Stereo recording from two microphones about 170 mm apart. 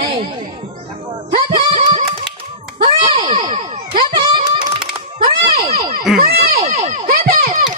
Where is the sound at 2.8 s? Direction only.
30° right (ahead or behind).